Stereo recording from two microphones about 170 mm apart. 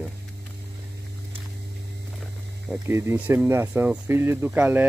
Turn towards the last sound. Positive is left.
turn(degrees=-10)  # may be behind; listen again after turning